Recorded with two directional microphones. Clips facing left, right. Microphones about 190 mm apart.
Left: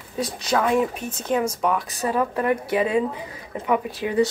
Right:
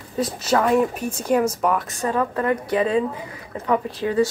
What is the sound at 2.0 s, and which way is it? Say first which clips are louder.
Speech: even; 15° left (ahead or behind).